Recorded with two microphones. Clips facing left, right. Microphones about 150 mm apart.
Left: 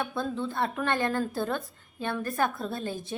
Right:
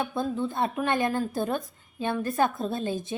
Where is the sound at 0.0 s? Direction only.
20° right (ahead or behind).